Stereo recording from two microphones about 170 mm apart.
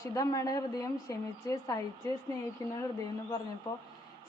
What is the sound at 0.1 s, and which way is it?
A woman's voice, 20° left (ahead or behind).